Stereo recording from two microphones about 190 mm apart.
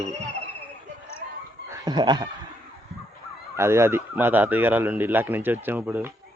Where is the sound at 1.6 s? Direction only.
15° right (ahead or behind).